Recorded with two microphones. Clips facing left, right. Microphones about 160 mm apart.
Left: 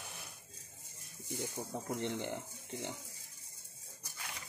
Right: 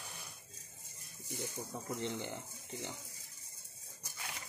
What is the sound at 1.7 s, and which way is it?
Speech, 55° left (ahead or behind).